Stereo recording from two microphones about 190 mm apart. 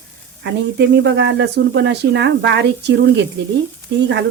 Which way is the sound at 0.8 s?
60° right (ahead or behind).